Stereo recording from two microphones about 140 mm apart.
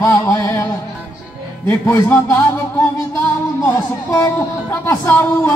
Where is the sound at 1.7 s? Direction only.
15° left (ahead or behind).